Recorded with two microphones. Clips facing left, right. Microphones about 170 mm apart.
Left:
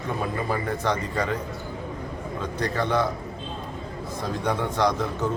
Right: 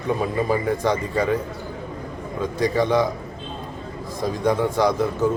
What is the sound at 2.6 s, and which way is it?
Speech, 10° right (ahead or behind).